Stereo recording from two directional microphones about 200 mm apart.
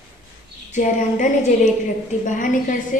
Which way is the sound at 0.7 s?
35° left (ahead or behind).